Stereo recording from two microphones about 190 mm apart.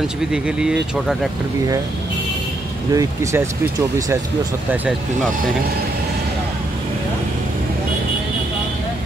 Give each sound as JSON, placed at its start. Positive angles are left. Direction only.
{"t": 0.3, "sound": "speech", "side_deg": -5}
{"t": 2.9, "sound": "speech", "side_deg": -15}